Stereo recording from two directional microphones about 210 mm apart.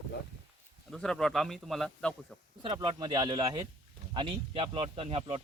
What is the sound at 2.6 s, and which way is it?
Speech, 25° right (ahead or behind).